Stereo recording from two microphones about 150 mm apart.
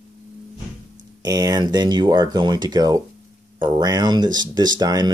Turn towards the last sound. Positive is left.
turn(degrees=-25)  # may be behind; listen again after turning